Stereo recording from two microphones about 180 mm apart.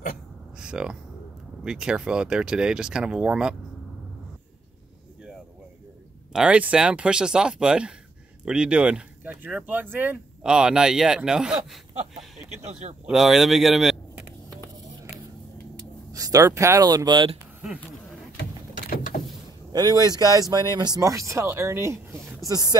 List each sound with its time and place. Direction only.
0.6 s speech: 5° right (ahead or behind)
6.3 s speech: 5° right (ahead or behind)
16.1 s speech: 20° right (ahead or behind)
18.4 s a sound: 50° left (ahead or behind)
19.7 s speech: 20° right (ahead or behind)